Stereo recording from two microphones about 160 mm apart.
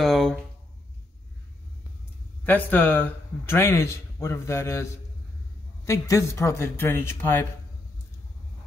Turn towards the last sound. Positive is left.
turn(degrees=15)  # may be behind; listen again after turning